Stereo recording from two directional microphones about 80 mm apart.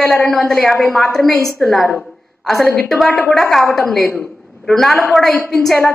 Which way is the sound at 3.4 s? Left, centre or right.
Centre.